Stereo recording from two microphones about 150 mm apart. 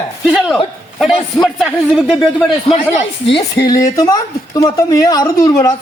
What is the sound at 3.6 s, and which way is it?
Speech, 25° left (ahead or behind).